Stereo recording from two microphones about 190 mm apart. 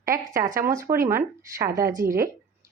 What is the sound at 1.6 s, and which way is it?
Speech, 45° right (ahead or behind).